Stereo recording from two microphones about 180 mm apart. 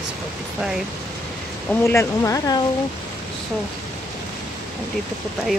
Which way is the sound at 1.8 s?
15° left (ahead or behind).